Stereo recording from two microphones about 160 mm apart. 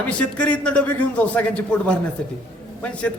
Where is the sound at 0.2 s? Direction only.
5° left (ahead or behind).